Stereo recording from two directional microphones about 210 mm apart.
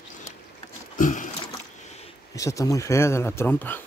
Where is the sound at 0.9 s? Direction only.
40° left (ahead or behind).